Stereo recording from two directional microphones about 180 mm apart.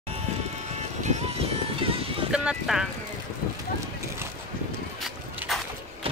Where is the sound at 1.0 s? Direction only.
35° right (ahead or behind).